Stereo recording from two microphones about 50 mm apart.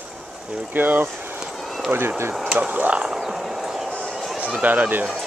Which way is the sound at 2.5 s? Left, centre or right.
Right.